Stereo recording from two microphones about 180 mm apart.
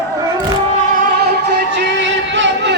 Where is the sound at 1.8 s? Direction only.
90° right.